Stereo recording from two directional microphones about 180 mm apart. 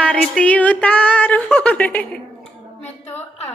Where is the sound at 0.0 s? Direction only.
5° left (ahead or behind).